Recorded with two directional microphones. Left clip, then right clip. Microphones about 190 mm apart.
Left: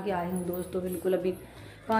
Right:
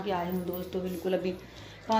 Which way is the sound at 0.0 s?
5° right (ahead or behind).